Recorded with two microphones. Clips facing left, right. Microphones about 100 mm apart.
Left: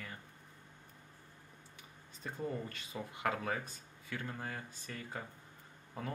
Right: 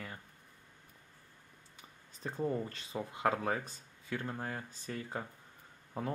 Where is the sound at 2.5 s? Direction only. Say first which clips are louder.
Right 5 dB; 20° right (ahead or behind).